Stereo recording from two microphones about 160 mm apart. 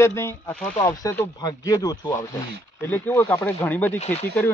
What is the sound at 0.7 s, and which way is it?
Speech, 20° left (ahead or behind).